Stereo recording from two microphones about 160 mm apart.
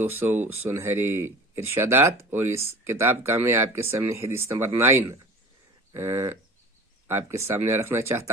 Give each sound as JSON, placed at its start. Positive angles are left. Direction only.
{"t": 0.0, "sound": "speech", "side_deg": -15}